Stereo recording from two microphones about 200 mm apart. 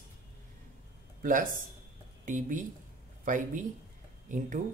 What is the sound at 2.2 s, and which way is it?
Speech, 40° right (ahead or behind).